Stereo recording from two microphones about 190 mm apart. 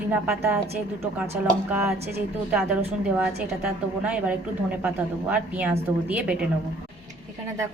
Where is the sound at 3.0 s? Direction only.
5° right (ahead or behind).